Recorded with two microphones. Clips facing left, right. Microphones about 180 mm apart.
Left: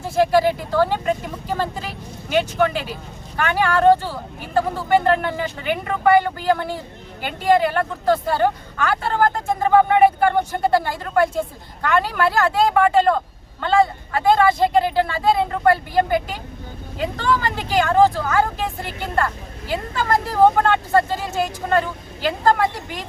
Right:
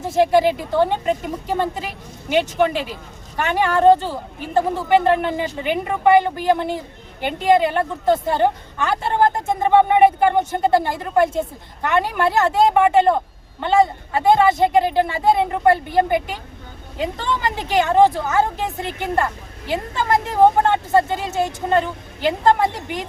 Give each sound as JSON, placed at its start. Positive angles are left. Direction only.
{"t": 0.0, "sound": "a woman's voice", "side_deg": -20}